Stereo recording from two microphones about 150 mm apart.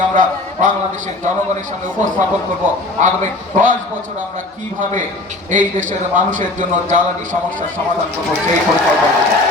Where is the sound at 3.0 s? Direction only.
60° right (ahead or behind).